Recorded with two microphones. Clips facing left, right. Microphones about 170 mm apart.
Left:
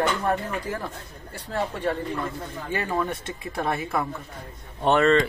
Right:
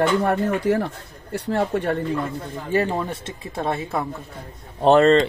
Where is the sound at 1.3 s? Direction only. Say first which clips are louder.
Right 7 dB; 65° right (ahead or behind).